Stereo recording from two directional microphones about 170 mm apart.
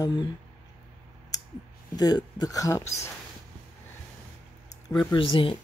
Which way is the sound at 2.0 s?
20° left (ahead or behind).